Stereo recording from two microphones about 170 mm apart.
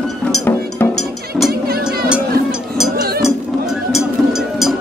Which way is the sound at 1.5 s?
65° right (ahead or behind).